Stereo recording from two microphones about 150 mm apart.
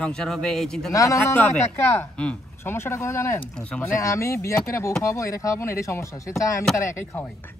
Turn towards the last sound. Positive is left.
turn(degrees=20)  # may be behind; listen again after turning